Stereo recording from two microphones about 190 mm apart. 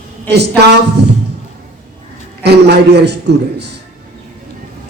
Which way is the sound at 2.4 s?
60° right (ahead or behind).